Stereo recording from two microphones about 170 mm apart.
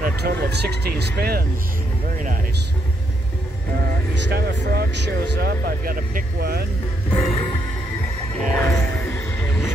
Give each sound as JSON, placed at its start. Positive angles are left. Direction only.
{"t": 0.0, "sound": "speech", "side_deg": -70}
{"t": 4.1, "sound": "speech", "side_deg": -70}
{"t": 7.1, "sound": "music", "side_deg": 35}
{"t": 8.4, "sound": "a sound", "side_deg": 15}